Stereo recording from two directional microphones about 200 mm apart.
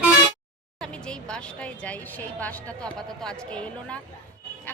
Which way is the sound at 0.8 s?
5° left (ahead or behind).